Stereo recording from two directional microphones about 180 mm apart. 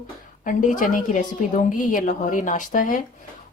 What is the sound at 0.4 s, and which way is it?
Speech, 45° left (ahead or behind).